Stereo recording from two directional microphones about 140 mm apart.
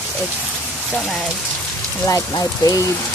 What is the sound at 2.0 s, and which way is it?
Speech, 25° left (ahead or behind).